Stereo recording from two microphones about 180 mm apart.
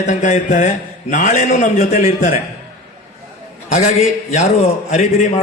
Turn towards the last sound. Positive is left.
turn(degrees=40)  # may be behind; listen again after turning